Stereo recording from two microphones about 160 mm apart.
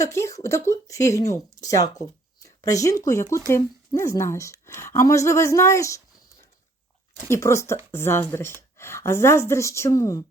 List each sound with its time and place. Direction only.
0.0 s speech: 20° left (ahead or behind)
7.3 s speech: 15° left (ahead or behind)